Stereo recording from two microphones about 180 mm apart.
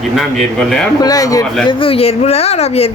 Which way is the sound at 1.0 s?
20° left (ahead or behind).